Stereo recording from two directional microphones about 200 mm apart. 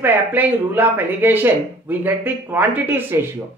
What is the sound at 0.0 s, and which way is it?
Speech, 10° right (ahead or behind).